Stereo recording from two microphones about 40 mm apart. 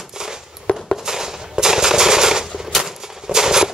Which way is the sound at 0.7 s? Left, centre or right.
Left.